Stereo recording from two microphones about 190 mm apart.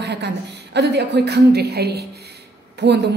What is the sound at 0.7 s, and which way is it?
A woman's voice, 60° right (ahead or behind).